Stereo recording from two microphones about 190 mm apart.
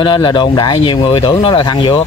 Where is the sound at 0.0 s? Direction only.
25° left (ahead or behind).